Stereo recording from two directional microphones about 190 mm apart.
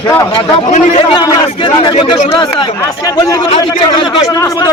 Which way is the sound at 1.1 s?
25° left (ahead or behind).